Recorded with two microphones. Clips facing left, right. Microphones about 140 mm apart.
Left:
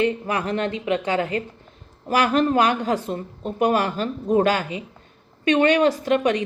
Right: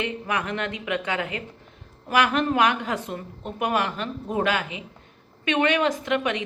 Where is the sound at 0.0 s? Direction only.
35° left (ahead or behind).